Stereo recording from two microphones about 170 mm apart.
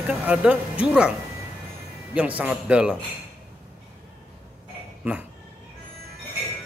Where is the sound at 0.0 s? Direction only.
5° right (ahead or behind).